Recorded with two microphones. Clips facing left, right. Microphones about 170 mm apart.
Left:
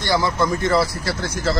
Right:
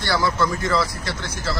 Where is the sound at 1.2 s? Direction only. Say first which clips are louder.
Left 7 dB; 45° left (ahead or behind).